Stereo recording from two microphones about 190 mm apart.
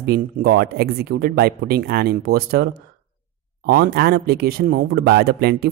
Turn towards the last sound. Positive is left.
turn(degrees=-55)  # may be behind; listen again after turning